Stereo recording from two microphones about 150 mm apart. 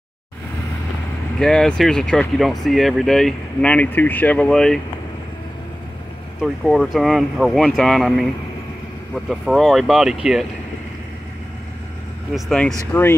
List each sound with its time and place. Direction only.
1.4 s speech: 5° left (ahead or behind)
6.4 s speech: centre (ahead or behind)
12.4 s speech: centre (ahead or behind)
12.9 s speech: 15° left (ahead or behind)